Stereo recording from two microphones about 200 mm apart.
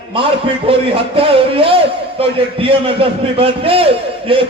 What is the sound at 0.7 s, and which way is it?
A man's voice, 30° right (ahead or behind).